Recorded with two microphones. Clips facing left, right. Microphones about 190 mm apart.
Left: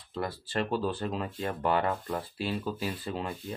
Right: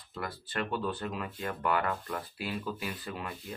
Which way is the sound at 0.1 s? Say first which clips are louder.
Left 5 dB; 30° left (ahead or behind).